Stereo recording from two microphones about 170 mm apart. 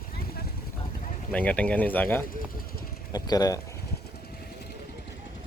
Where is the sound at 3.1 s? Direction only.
20° left (ahead or behind).